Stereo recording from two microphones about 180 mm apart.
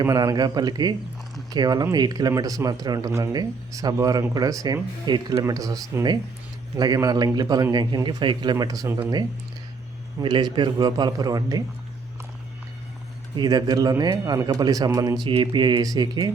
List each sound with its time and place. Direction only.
0.0 s a man's voice: 20° right (ahead or behind)
13.3 s a man's voice: 25° right (ahead or behind)